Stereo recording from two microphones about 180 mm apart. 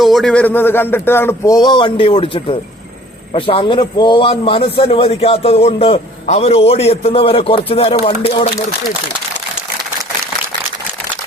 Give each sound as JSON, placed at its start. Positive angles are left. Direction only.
{"t": 0.0, "sound": "a man's voice", "side_deg": 0}